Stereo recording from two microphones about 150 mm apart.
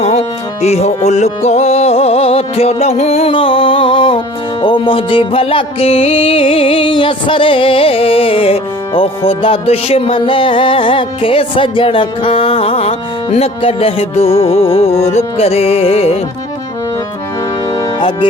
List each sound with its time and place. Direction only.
0.0 s music: 45° left (ahead or behind)